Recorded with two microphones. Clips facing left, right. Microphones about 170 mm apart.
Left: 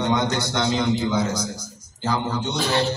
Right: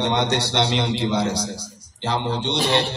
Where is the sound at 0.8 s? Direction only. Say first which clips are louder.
Even; 30° right (ahead or behind).